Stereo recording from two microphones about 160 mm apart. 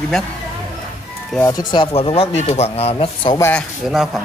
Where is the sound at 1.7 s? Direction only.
35° left (ahead or behind).